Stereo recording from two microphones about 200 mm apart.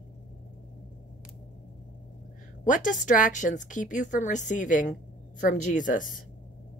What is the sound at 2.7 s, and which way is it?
Speech, 40° left (ahead or behind).